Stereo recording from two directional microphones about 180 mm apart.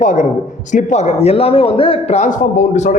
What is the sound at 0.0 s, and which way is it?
A woman's voice, 45° left (ahead or behind).